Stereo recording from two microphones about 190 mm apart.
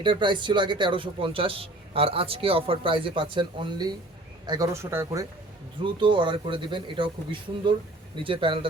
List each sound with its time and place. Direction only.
0.0 s a man's voice: 25° right (ahead or behind)
5.8 s a man's voice: 25° right (ahead or behind)